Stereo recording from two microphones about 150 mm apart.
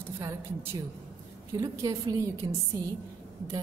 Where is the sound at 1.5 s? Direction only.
20° right (ahead or behind).